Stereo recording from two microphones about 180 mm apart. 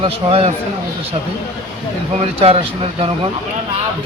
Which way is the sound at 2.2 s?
35° right (ahead or behind).